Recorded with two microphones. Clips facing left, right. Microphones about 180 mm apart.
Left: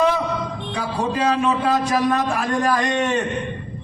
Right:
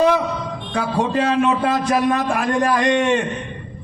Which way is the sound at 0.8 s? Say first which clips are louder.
Right 3 dB; 40° left (ahead or behind).